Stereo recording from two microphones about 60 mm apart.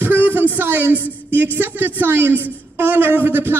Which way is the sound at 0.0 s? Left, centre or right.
Right.